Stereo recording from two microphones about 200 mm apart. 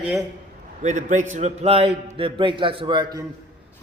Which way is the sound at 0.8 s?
35° right (ahead or behind).